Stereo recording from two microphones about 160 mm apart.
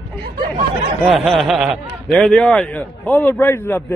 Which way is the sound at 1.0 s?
5° right (ahead or behind).